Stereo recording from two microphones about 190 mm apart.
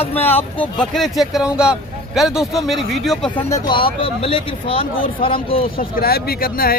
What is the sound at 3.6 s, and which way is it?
Speech, 25° left (ahead or behind).